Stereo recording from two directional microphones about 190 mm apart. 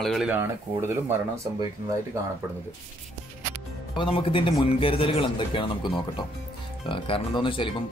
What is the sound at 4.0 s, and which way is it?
A man's voice, 25° left (ahead or behind).